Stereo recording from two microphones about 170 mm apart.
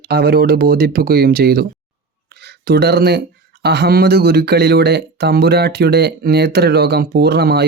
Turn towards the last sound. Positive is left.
turn(degrees=-75)  # may be behind; listen again after turning